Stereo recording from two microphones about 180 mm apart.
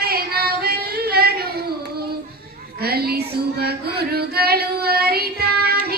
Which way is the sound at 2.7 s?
60° right (ahead or behind).